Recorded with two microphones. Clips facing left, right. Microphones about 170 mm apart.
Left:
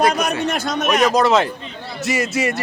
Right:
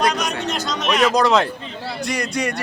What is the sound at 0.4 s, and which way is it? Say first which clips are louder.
Speech: left 4 dB; 55° left (ahead or behind).